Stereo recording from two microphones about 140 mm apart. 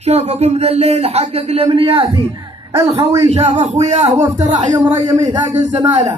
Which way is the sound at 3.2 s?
50° right (ahead or behind).